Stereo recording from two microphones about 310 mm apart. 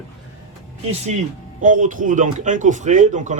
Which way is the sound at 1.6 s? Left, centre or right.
Right.